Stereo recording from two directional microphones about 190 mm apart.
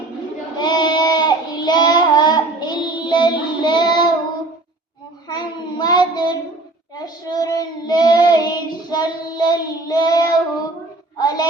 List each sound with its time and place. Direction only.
0.6 s goat: 25° left (ahead or behind)
5.3 s child singing: 20° left (ahead or behind)